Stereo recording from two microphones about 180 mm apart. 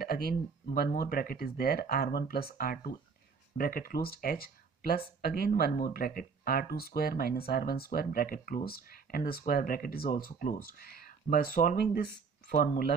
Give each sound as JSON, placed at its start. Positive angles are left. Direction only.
{"t": 0.0, "sound": "speech", "side_deg": 55}